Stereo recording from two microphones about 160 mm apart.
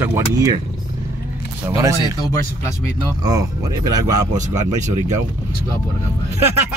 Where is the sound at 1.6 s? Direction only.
20° right (ahead or behind).